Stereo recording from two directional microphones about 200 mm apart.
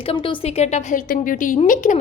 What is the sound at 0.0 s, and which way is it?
A woman's voice, 25° left (ahead or behind).